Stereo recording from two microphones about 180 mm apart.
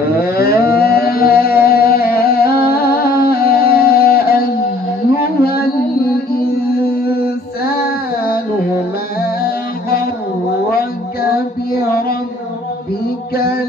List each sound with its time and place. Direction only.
0.1 s a sound: 60° left (ahead or behind)
5.1 s mantra: 60° left (ahead or behind)
9.2 s music: 60° left (ahead or behind)